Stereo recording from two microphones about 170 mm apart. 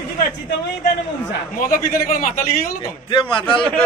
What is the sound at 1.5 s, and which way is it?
A man's voice, 55° left (ahead or behind).